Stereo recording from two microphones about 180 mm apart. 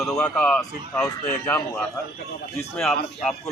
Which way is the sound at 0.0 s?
5° left (ahead or behind).